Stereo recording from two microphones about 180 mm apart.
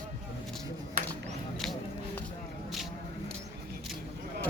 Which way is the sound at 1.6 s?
Centre (ahead or behind).